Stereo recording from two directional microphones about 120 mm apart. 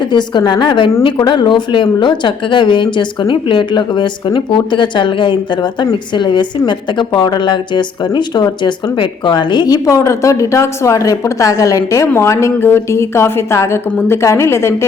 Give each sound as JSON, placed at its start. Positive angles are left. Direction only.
{"t": 0.1, "sound": "a woman's voice", "side_deg": 40}